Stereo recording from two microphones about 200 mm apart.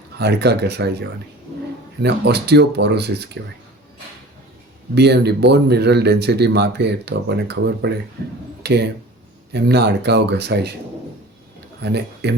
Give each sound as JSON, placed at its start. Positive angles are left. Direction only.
{"t": 0.2, "sound": "speech", "side_deg": -55}
{"t": 4.9, "sound": "speech", "side_deg": -55}
{"t": 11.8, "sound": "speech", "side_deg": -55}